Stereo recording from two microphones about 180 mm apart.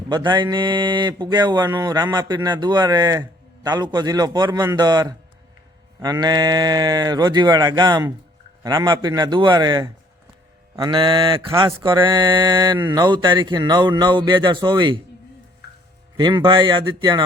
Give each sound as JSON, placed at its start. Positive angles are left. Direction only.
{"t": 0.1, "sound": "speech", "side_deg": -25}
{"t": 16.1, "sound": "speech", "side_deg": -25}